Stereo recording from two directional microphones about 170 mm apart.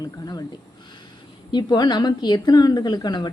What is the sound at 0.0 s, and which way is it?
Speech, 20° left (ahead or behind).